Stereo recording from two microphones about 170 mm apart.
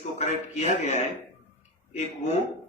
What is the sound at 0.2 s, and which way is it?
A man's voice, 40° left (ahead or behind).